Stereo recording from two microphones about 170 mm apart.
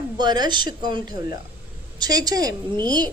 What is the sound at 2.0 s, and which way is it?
Speech, 25° right (ahead or behind).